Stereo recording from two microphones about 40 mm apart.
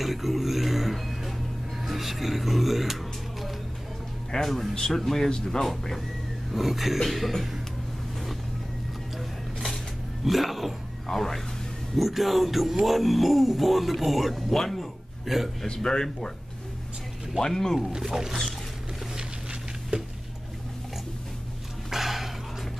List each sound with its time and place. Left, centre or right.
0.0 s a sound: centre
1.9 s speech: centre
4.3 s speech: centre
6.5 s speech: centre
10.2 s speech: centre
15.2 s speech: centre
15.6 s speech: centre
17.4 s speech: centre
18.0 s speech: centre
19.9 s a sound: right
21.9 s a sound: centre